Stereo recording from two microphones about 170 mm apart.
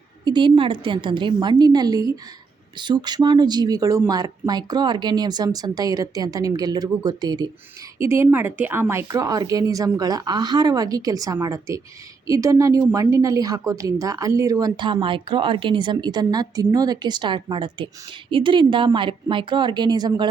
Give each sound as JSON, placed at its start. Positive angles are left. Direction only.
{"t": 0.3, "sound": "a woman's voice", "side_deg": -25}